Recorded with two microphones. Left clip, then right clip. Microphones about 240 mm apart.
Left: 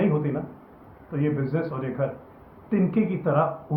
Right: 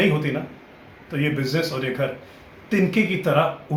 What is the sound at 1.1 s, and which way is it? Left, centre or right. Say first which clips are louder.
Speech: right 3 dB; right.